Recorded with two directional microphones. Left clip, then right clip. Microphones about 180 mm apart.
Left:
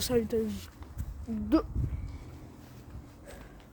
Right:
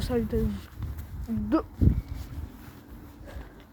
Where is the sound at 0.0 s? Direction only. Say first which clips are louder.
Even; 20° left (ahead or behind).